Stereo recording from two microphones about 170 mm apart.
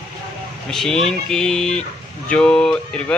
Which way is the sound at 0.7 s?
Centre (ahead or behind).